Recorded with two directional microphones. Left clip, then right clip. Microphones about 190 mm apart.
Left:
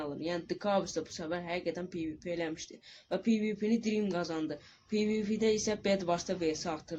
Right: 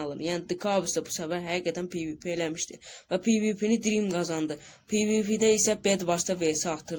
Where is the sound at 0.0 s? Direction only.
60° right (ahead or behind).